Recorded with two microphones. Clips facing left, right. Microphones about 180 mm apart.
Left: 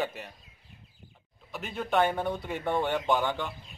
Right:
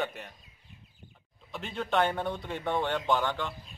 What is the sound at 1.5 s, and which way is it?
Speech, 5° left (ahead or behind).